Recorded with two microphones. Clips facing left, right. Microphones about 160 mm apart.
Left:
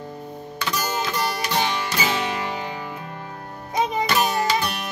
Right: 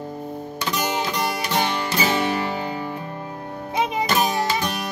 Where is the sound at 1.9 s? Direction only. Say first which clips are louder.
Right 3 dB; 35° right (ahead or behind).